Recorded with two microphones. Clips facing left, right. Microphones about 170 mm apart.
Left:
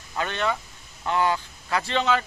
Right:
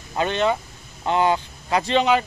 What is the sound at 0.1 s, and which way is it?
A man's voice, 20° right (ahead or behind).